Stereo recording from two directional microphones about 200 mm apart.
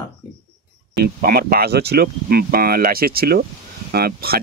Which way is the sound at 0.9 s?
50° right (ahead or behind).